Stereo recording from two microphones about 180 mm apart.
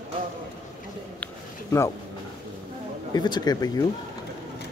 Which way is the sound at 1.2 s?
15° left (ahead or behind).